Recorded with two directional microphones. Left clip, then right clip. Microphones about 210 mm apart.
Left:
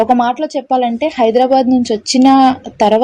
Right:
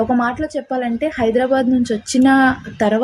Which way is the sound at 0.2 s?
15° left (ahead or behind).